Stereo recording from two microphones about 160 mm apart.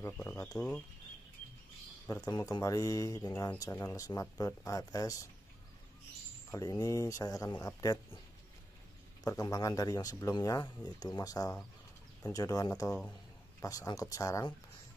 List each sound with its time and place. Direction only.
0.0 s speech: 15° left (ahead or behind)
0.6 s speech: 5° left (ahead or behind)
2.2 s speech: 25° left (ahead or behind)
6.5 s speech: 20° left (ahead or behind)
9.2 s speech: 20° left (ahead or behind)